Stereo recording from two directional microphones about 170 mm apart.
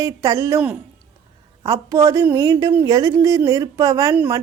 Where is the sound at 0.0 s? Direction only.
20° right (ahead or behind).